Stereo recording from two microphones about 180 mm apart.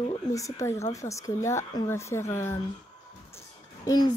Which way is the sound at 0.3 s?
15° left (ahead or behind).